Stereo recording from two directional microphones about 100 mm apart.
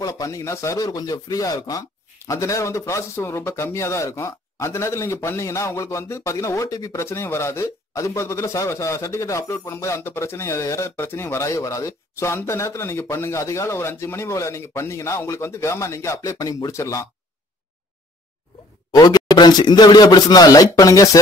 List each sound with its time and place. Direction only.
0.0 s speech: 35° left (ahead or behind)
18.9 s speech: 45° left (ahead or behind)